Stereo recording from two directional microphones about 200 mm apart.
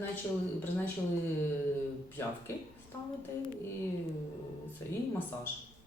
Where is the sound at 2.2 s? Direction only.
10° left (ahead or behind).